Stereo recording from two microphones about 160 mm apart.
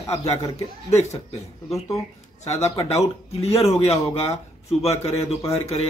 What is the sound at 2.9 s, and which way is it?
Speech, 40° left (ahead or behind).